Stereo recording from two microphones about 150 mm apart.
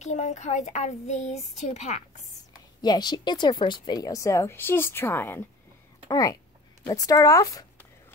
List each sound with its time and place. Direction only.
0.0 s speech: 50° left (ahead or behind)
2.8 s a woman's voice: 30° left (ahead or behind)